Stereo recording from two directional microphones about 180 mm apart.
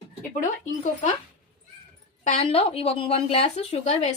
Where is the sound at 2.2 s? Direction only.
35° left (ahead or behind).